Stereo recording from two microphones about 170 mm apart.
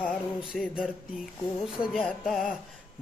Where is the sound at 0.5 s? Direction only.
5° right (ahead or behind).